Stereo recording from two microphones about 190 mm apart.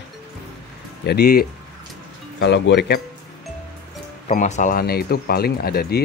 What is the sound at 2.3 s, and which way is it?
Speech, 70° left (ahead or behind).